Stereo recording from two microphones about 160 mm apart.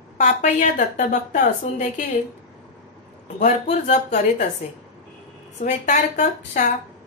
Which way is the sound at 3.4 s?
45° left (ahead or behind).